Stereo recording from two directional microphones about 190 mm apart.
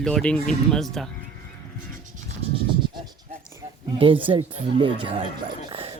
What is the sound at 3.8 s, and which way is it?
Speech, 25° right (ahead or behind).